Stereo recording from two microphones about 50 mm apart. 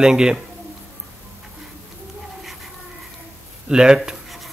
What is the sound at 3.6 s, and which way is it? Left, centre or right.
Speech, centre.